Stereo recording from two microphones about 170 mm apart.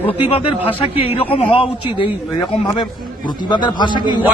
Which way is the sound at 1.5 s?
30° left (ahead or behind).